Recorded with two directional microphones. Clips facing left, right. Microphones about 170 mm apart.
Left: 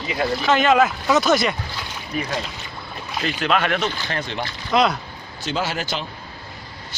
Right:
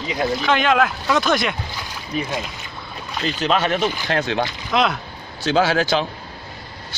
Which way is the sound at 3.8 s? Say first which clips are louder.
Right 3 dB; 10° right (ahead or behind).